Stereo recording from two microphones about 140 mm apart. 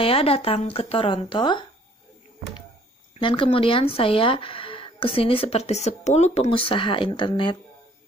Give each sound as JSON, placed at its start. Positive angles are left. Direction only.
{"t": 0.0, "sound": "speech", "side_deg": 45}
{"t": 3.2, "sound": "speech", "side_deg": 35}